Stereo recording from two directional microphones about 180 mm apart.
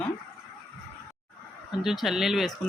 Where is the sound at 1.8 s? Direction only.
Centre (ahead or behind).